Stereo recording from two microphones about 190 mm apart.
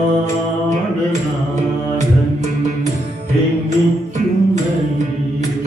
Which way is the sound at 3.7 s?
40° right (ahead or behind).